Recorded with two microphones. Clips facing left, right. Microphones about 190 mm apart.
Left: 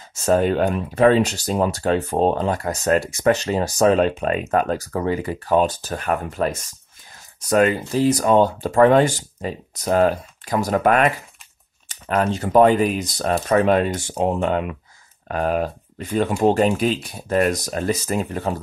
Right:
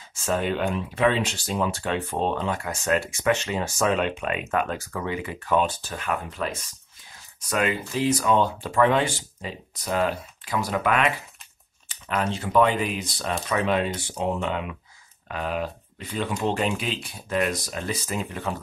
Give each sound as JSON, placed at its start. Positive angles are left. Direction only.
{"t": 0.1, "sound": "speech", "side_deg": 40}